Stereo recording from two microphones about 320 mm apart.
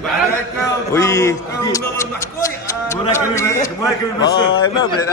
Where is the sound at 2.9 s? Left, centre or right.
Centre.